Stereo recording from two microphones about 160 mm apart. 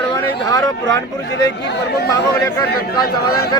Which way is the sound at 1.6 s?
90° left.